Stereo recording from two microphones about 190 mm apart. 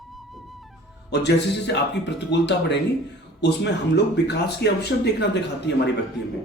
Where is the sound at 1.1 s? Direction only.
65° left (ahead or behind).